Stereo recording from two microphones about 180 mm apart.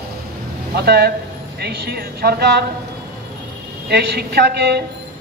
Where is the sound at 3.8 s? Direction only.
65° right (ahead or behind).